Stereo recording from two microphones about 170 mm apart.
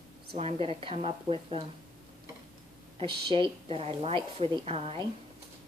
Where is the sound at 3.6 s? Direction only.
35° right (ahead or behind).